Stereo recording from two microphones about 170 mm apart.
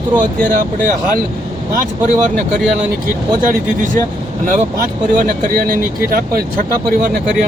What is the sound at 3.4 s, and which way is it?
Speech, 50° right (ahead or behind).